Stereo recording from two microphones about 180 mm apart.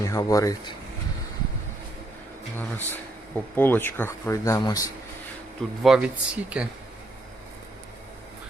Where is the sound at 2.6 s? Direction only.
10° left (ahead or behind).